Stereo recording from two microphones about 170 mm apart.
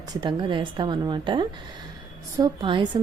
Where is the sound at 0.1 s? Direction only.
25° right (ahead or behind).